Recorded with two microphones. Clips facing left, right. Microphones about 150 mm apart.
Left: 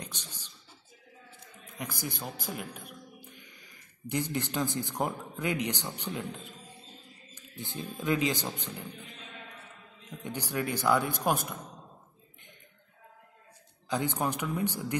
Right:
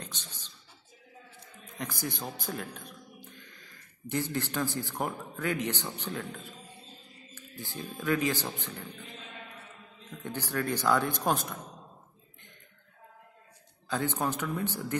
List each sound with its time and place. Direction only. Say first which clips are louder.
0.0 s beatboxing: left 1 dB; 10° left (ahead or behind)
1.8 s a man's voice: right 1 dB; 10° left (ahead or behind)
10.2 s speech: right 1 dB; 15° left (ahead or behind)
13.8 s speech: even; 15° left (ahead or behind)